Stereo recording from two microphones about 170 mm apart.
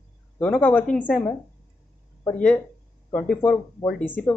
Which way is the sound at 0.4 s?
10° left (ahead or behind).